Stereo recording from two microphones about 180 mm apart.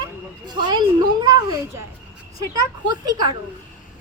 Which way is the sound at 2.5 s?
20° right (ahead or behind).